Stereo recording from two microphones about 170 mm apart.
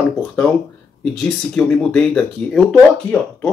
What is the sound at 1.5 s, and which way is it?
Speech, 5° left (ahead or behind).